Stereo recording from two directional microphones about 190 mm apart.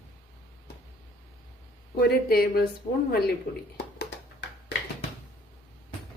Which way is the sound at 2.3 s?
50° left (ahead or behind).